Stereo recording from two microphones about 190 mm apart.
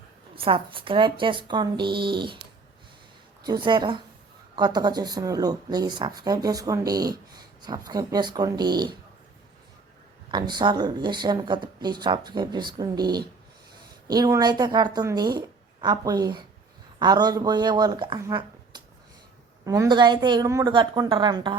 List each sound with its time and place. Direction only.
0.3 s a woman's voice: 30° right (ahead or behind)
3.4 s a woman's voice: 25° right (ahead or behind)
10.3 s a woman's voice: 25° right (ahead or behind)
18.2 s a sound: 20° right (ahead or behind)
19.6 s a woman's voice: 15° right (ahead or behind)